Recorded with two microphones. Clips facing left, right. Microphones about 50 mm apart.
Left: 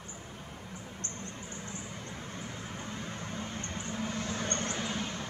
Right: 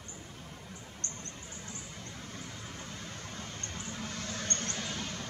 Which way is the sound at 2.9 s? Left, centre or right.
Centre.